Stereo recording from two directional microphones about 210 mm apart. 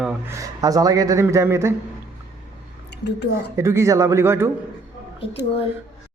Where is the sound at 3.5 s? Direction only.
15° right (ahead or behind).